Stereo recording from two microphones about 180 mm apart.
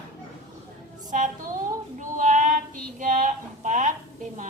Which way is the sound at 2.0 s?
45° right (ahead or behind).